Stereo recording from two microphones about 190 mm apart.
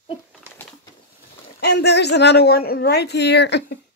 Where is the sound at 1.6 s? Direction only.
60° left (ahead or behind).